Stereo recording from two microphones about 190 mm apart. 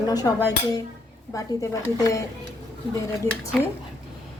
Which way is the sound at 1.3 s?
15° left (ahead or behind).